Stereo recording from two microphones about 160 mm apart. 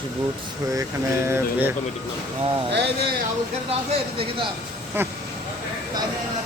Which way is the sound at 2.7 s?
90° right.